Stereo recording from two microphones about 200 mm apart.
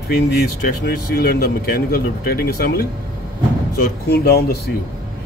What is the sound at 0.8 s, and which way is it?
Speech, 50° left (ahead or behind).